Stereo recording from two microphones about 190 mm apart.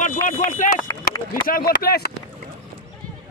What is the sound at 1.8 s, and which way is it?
Speech, 55° left (ahead or behind).